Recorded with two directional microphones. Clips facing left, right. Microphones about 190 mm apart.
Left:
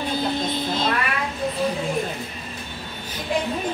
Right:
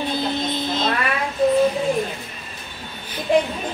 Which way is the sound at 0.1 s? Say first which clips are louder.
Right 1 dB; 10° left (ahead or behind).